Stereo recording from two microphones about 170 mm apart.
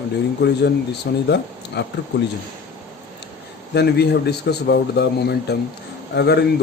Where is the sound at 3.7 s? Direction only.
75° left (ahead or behind).